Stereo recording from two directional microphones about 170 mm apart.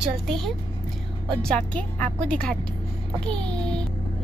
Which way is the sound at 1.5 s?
5° left (ahead or behind).